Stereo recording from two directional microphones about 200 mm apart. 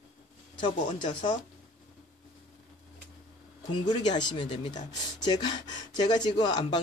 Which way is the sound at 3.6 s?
20° left (ahead or behind).